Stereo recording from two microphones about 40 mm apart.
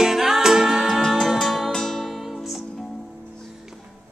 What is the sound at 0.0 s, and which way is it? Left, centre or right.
Music, centre.